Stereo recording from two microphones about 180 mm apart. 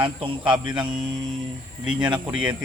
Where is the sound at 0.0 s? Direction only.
25° right (ahead or behind).